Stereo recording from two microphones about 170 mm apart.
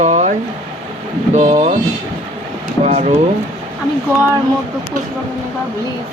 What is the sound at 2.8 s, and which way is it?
Speech, 40° right (ahead or behind).